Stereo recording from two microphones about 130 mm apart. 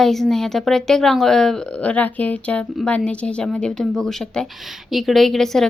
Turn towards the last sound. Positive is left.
turn(degrees=5)  # may be behind; listen again after turning